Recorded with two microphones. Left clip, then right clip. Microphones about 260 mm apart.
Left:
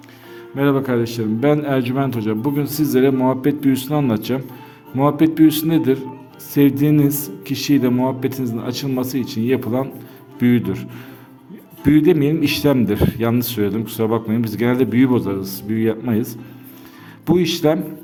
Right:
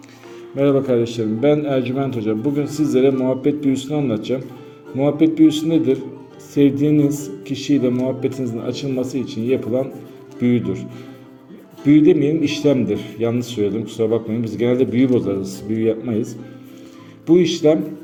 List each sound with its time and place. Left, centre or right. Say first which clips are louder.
0.5 s a man's voice: right 2 dB; left
11.9 s a man's voice: right 1 dB; left